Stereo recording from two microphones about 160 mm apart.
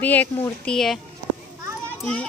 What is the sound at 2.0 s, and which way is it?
Speech, 5° left (ahead or behind).